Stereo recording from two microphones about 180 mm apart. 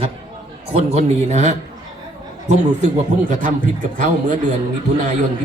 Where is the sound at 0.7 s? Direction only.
35° right (ahead or behind).